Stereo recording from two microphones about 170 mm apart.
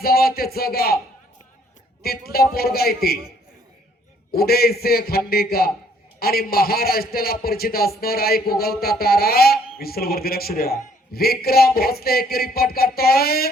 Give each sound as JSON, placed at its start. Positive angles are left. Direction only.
{"t": 0.0, "sound": "music", "side_deg": 60}
{"t": 2.0, "sound": "a man's voice", "side_deg": 65}
{"t": 4.3, "sound": "speech", "side_deg": 65}